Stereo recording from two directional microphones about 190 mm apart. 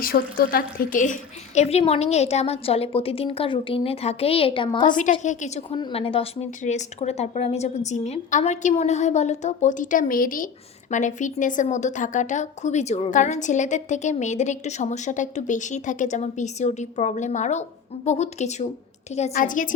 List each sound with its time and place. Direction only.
0.0 s a woman's voice: 50° left (ahead or behind); by 4.9 s 25° left (ahead or behind)
4.9 s a woman's voice: 40° left (ahead or behind)
5.7 s a woman's voice: 30° left (ahead or behind); by 19.7 s 45° left (ahead or behind)